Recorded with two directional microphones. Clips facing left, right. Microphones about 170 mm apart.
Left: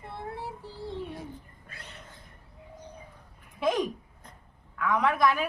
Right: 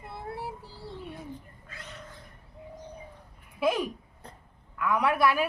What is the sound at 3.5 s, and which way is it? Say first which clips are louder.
Speech: even; 10° right (ahead or behind).